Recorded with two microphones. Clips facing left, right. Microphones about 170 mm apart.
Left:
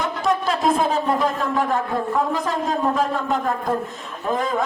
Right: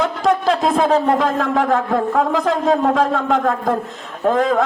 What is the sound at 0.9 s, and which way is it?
A man's voice, 65° right (ahead or behind).